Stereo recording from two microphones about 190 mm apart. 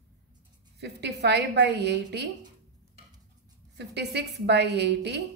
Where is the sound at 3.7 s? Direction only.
60° right (ahead or behind).